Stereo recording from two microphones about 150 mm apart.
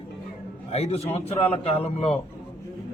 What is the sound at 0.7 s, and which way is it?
A man's voice, 45° left (ahead or behind).